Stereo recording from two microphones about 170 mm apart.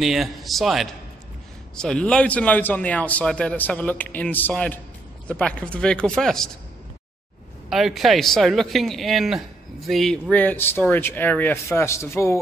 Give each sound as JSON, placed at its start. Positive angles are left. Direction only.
{"t": 0.0, "sound": "a man's voice", "side_deg": 0}
{"t": 7.7, "sound": "a man's voice", "side_deg": 0}